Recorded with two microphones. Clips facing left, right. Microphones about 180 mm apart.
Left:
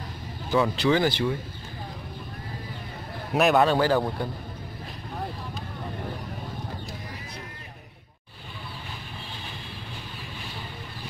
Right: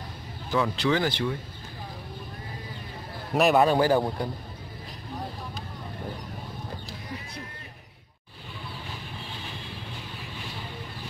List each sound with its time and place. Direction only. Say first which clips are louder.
0.5 s speech: left 3 dB; 15° left (ahead or behind)
3.3 s a man's voice: even; centre (ahead or behind)
3.6 s speech: even; 15° right (ahead or behind)